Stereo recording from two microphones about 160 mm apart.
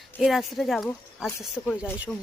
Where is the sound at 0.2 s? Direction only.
Centre (ahead or behind).